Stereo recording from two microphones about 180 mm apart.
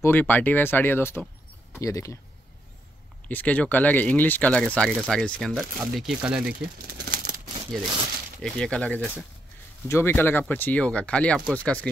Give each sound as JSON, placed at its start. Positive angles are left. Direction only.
{"t": 0.0, "sound": "speech", "side_deg": 10}
{"t": 3.3, "sound": "speech", "side_deg": 10}
{"t": 6.6, "sound": "a sound", "side_deg": -55}
{"t": 8.4, "sound": "speech", "side_deg": 5}